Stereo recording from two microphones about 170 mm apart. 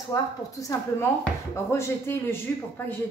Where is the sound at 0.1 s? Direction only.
20° left (ahead or behind).